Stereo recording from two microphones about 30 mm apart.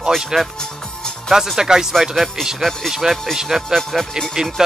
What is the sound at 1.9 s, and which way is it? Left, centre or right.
Speech, centre.